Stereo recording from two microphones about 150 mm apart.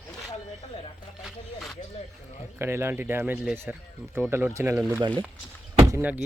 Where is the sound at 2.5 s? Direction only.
15° right (ahead or behind).